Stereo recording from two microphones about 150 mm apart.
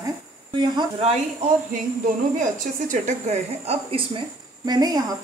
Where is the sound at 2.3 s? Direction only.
55° right (ahead or behind); by 4.2 s 40° right (ahead or behind).